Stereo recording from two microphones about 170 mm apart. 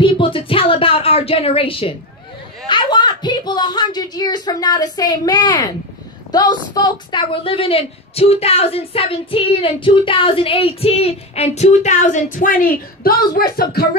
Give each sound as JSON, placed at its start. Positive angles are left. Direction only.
{"t": 0.0, "sound": "a woman's voice", "side_deg": 30}